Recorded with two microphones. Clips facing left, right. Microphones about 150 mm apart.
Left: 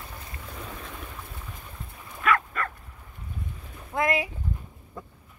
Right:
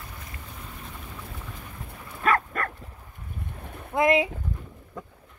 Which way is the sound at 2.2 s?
45° right (ahead or behind).